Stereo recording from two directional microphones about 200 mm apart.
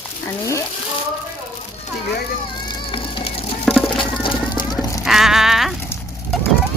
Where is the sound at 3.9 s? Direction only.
25° left (ahead or behind).